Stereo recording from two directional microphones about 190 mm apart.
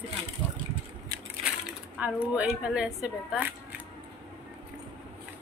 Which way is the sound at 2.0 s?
5° right (ahead or behind).